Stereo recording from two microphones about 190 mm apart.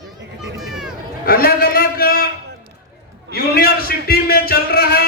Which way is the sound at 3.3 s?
55° left (ahead or behind).